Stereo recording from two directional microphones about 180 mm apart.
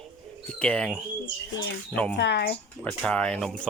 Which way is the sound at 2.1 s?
75° left (ahead or behind).